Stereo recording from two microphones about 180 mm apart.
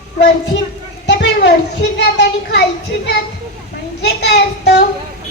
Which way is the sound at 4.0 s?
70° left (ahead or behind).